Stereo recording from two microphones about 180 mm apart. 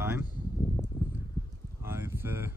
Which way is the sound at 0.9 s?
25° left (ahead or behind).